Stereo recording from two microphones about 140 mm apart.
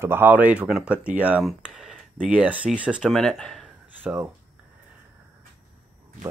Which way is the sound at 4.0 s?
10° right (ahead or behind).